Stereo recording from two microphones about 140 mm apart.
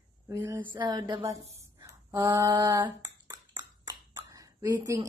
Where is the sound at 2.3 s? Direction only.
35° right (ahead or behind).